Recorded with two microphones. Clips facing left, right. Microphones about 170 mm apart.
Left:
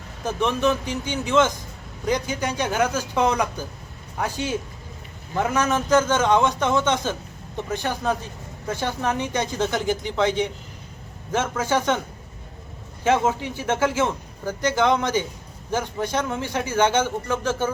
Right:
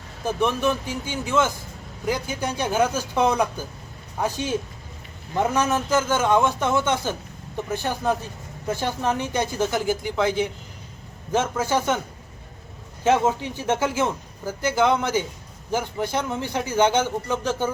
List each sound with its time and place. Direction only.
0.3 s a man's voice: 15° right (ahead or behind)
1.0 s speech: 20° left (ahead or behind)
1.3 s a man's voice: 10° right (ahead or behind)
2.6 s a man's voice: 10° right (ahead or behind)
4.3 s speech: 15° left (ahead or behind)
5.4 s a man's voice: 10° right (ahead or behind)
13.1 s a man's voice: 10° right (ahead or behind)
13.4 s speech: 10° left (ahead or behind)
13.7 s a man's voice: 10° right (ahead or behind)